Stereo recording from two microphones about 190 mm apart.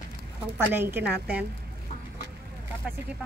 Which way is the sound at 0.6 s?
10° right (ahead or behind).